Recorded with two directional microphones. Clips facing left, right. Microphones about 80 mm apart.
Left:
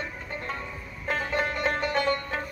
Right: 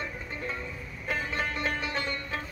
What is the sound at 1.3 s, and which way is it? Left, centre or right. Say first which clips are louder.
Music: left 6 dB; left.